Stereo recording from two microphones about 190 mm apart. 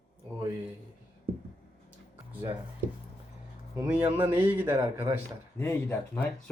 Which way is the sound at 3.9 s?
10° right (ahead or behind).